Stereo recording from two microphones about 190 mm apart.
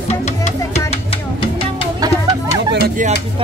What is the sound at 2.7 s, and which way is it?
Music, 55° right (ahead or behind).